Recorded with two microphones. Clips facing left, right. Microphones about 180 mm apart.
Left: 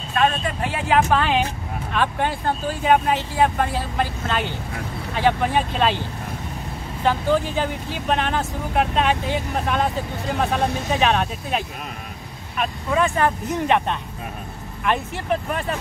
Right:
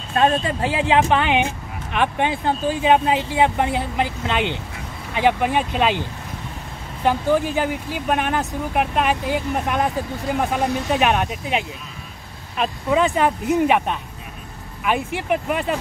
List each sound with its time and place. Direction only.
0.1 s speech: 30° right (ahead or behind); by 6.0 s 15° right (ahead or behind)
7.1 s speech: 10° right (ahead or behind)
12.5 s speech: 20° right (ahead or behind)